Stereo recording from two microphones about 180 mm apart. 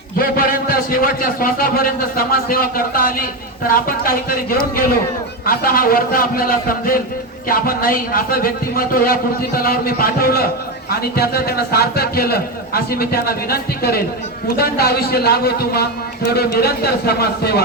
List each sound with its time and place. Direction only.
0.2 s a man's voice: 55° left (ahead or behind)